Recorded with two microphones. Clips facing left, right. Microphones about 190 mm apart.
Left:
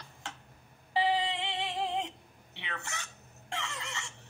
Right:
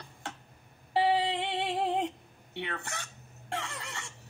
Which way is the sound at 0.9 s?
55° right (ahead or behind).